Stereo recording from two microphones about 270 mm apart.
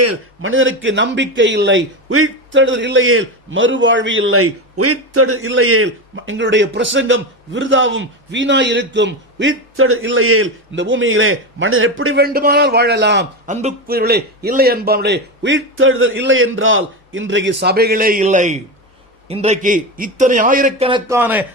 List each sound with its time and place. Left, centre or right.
0.0 s a man's voice: right
12.2 s a man's voice: right
13.5 s a man's voice: right; by 21.4 s centre